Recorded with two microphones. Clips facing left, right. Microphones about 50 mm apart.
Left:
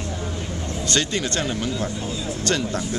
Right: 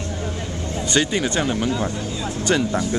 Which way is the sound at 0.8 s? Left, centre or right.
Centre.